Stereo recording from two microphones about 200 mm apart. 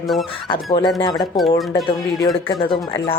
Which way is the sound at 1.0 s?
25° left (ahead or behind).